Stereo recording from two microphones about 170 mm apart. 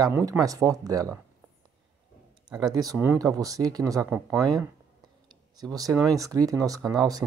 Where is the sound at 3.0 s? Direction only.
15° right (ahead or behind).